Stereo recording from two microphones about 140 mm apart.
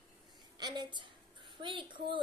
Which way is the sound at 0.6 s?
30° right (ahead or behind).